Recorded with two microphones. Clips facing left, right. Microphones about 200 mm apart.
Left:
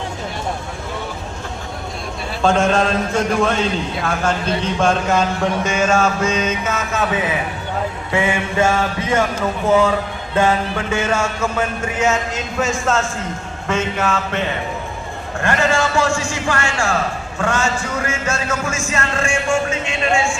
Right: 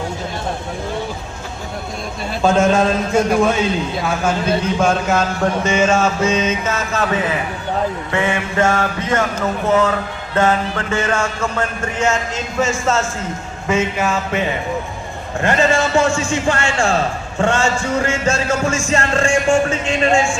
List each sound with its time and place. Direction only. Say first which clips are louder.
2.4 s a sound: right 2 dB; 5° right (ahead or behind)
4.0 s speech: right 1 dB; 5° right (ahead or behind)
8.1 s mantra: left 3 dB; 10° left (ahead or behind)
10.3 s speech: even; 10° left (ahead or behind)
13.7 s a sound: right 2 dB; 10° right (ahead or behind)
15.4 s a man's voice: right 2 dB; 20° right (ahead or behind)